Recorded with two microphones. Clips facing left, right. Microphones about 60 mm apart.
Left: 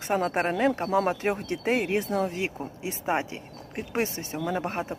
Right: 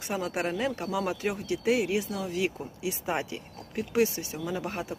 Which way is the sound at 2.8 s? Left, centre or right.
Left.